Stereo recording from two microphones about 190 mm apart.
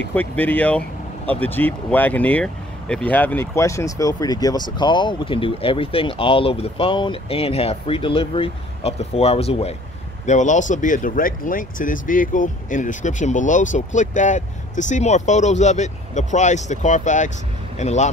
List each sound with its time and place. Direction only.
0.1 s speech: 10° left (ahead or behind); by 18.1 s 35° left (ahead or behind)